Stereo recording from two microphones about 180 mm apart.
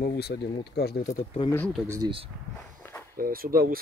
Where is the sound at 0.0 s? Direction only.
65° left (ahead or behind).